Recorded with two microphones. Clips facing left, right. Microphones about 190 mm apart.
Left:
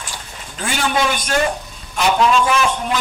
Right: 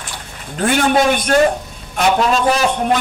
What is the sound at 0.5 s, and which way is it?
Speech, 55° right (ahead or behind).